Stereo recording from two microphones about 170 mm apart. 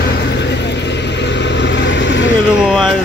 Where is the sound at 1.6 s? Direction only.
90° left.